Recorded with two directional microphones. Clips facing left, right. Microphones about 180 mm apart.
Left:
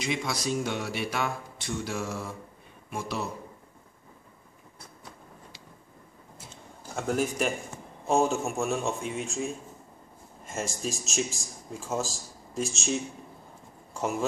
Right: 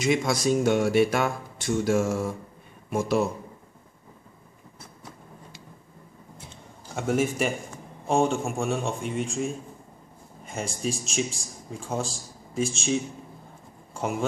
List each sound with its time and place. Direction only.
0.0 s speech: 45° right (ahead or behind)
7.0 s a man's voice: centre (ahead or behind)